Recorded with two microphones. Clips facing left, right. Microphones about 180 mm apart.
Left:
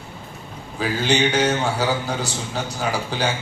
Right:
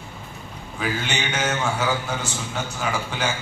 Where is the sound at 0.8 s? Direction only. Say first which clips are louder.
Left 7 dB; 35° left (ahead or behind).